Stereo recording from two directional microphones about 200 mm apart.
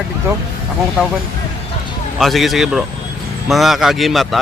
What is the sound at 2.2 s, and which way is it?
Speech, centre (ahead or behind).